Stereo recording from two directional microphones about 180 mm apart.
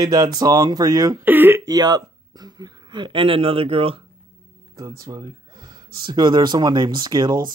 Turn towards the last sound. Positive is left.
turn(degrees=-25)  # may be behind; listen again after turning